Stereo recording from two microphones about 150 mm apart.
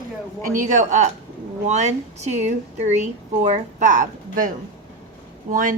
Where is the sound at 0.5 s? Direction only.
55° right (ahead or behind).